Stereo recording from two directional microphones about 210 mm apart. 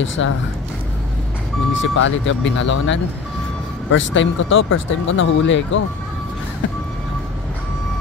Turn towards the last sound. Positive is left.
turn(degrees=65)  # may be behind; listen again after turning